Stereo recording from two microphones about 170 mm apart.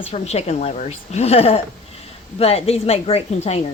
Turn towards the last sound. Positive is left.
turn(degrees=40)  # may be behind; listen again after turning